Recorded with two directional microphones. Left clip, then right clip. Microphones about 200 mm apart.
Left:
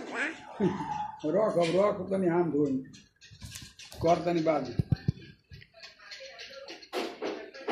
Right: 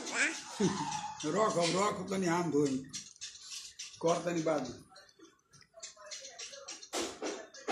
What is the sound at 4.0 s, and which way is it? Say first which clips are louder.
Speech: left 6 dB; 40° right (ahead or behind).